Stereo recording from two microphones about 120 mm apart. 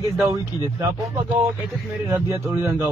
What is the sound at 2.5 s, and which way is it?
Speech, 25° right (ahead or behind).